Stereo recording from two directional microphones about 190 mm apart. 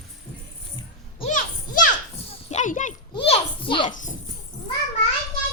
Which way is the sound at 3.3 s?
25° left (ahead or behind).